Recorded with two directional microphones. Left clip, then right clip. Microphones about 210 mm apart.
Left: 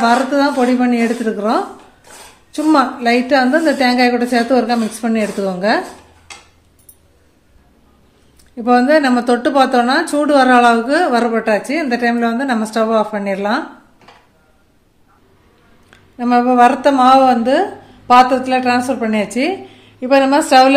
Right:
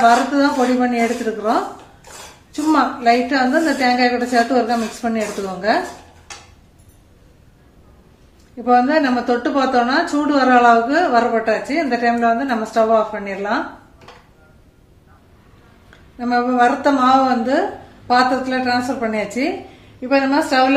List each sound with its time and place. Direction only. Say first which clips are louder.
0.0 s a woman's voice: even; 50° left (ahead or behind)
2.5 s a woman's voice: left 3 dB; 50° left (ahead or behind)
8.6 s a woman's voice: left 3 dB; 50° left (ahead or behind)
16.2 s a woman's voice: left 5 dB; 45° left (ahead or behind)